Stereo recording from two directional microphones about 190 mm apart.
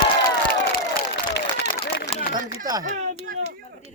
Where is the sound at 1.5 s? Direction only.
60° left (ahead or behind).